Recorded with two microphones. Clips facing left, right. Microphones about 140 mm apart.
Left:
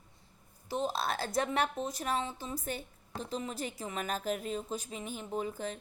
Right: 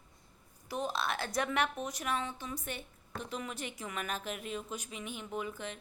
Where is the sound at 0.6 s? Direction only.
30° left (ahead or behind).